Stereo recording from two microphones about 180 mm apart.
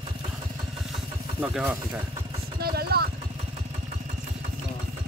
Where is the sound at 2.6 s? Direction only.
60° right (ahead or behind).